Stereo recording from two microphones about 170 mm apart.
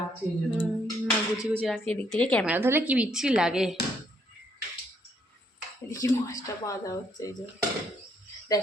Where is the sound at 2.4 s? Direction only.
10° right (ahead or behind).